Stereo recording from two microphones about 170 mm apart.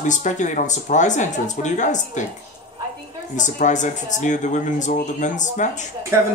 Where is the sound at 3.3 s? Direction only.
45° left (ahead or behind).